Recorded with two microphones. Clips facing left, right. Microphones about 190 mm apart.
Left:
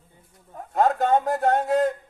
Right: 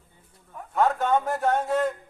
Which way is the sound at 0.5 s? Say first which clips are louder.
Left 2 dB; 35° left (ahead or behind).